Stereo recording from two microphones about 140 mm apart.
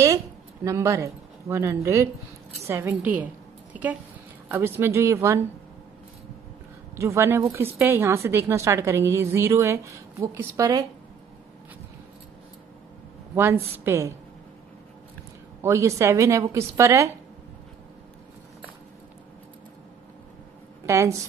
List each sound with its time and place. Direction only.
0.7 s a woman's voice: 20° right (ahead or behind)
4.5 s a woman's voice: 15° right (ahead or behind)
7.0 s a woman's voice: 20° right (ahead or behind)
13.3 s a woman's voice: 15° right (ahead or behind)
15.6 s a woman's voice: 20° right (ahead or behind)
20.8 s a woman's voice: 20° right (ahead or behind)